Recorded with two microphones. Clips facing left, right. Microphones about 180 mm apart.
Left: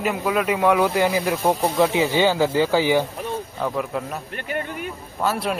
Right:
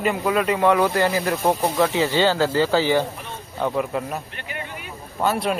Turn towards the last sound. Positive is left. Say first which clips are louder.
# right 1 dB
turn(degrees=0)  # may be behind; listen again after turning